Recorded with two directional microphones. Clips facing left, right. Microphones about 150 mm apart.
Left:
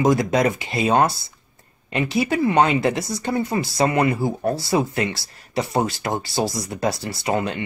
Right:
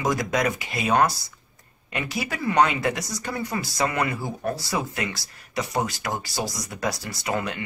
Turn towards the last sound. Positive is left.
turn(degrees=25)  # may be behind; listen again after turning